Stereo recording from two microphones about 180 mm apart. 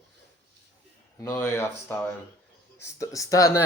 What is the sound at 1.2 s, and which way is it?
Speech, 15° left (ahead or behind).